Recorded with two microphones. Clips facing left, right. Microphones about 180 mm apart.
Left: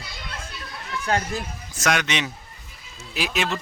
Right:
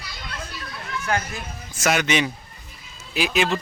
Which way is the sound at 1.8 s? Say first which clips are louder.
Right 3 dB; 5° right (ahead or behind).